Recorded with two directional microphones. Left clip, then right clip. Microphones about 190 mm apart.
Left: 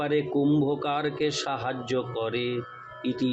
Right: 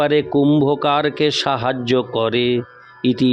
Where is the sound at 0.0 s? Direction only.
60° right (ahead or behind).